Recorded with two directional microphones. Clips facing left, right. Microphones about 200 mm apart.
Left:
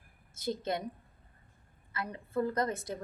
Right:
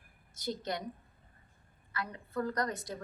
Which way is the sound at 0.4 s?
25° left (ahead or behind).